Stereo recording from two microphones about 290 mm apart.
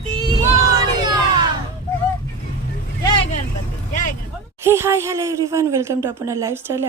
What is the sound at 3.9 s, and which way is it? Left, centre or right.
Vehicle, left.